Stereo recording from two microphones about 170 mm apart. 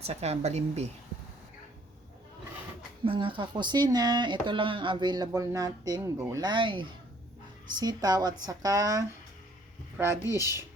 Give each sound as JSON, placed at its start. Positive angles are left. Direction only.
{"t": 0.0, "sound": "a woman's voice", "side_deg": -40}
{"t": 3.0, "sound": "speech", "side_deg": -30}